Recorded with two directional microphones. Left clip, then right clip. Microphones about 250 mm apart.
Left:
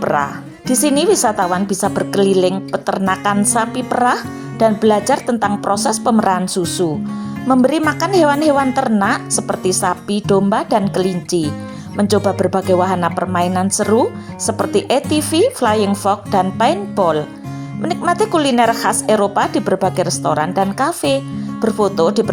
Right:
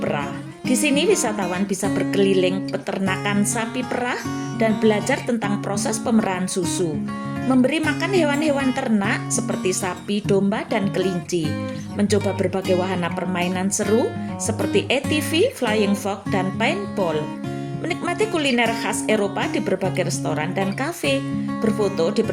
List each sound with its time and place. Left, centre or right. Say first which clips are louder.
0.0 s a woman's voice: left 8 dB; centre